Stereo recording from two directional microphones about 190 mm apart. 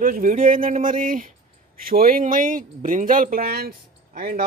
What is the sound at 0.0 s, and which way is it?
Speech, 45° right (ahead or behind).